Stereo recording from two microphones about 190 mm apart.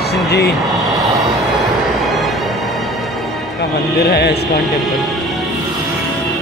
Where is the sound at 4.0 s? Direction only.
60° left (ahead or behind).